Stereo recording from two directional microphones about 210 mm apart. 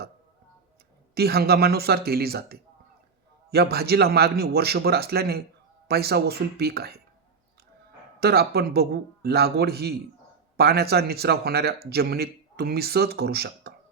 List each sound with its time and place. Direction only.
1.1 s speech: 50° right (ahead or behind)
8.2 s speech: 50° right (ahead or behind)